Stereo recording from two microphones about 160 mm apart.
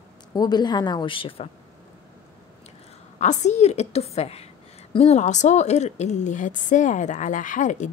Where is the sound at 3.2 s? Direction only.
45° left (ahead or behind).